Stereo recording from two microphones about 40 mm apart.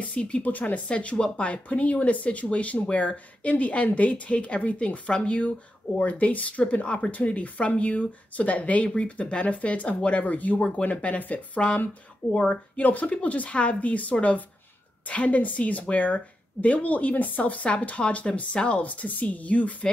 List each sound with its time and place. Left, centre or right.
0.0 s speech: left
0.4 s speech: left
0.8 s speech: left